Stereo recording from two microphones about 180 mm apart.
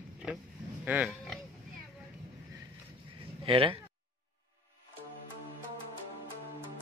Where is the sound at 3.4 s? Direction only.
30° right (ahead or behind).